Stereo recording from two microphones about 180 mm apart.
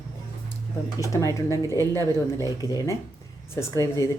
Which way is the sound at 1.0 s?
15° left (ahead or behind).